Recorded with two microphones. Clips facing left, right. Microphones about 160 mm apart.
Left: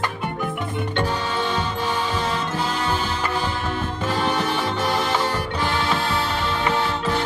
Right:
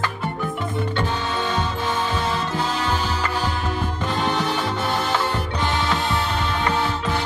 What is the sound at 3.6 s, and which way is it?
Music, 10° right (ahead or behind).